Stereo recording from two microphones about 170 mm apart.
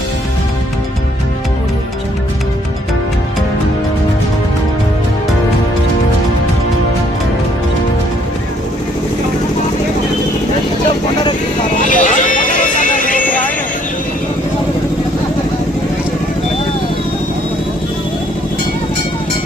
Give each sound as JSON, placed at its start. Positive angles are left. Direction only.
{"t": 10.8, "sound": "vehicle", "side_deg": 25}
{"t": 11.8, "sound": "music", "side_deg": 50}